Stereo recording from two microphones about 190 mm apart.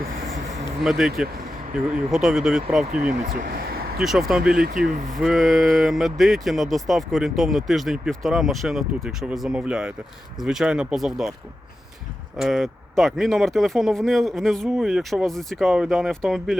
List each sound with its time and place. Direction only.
0.8 s speech: centre (ahead or behind)
3.2 s speech: 50° right (ahead or behind)
3.9 s speech: centre (ahead or behind)
12.4 s speech: centre (ahead or behind)